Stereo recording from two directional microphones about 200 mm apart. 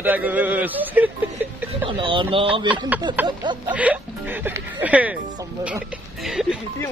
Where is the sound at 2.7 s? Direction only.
10° right (ahead or behind).